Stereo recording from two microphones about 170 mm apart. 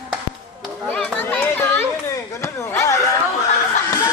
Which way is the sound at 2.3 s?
15° left (ahead or behind).